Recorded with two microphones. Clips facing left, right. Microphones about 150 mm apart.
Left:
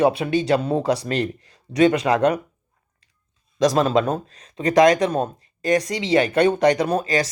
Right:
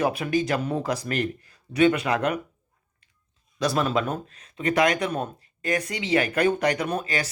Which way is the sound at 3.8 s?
35° left (ahead or behind).